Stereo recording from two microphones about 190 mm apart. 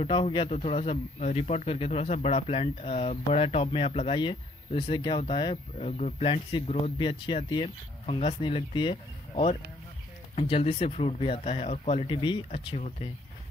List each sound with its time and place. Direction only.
0.0 s speech: 25° left (ahead or behind)